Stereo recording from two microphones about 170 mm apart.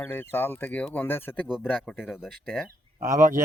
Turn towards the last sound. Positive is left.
turn(degrees=-50)  # may be behind; listen again after turning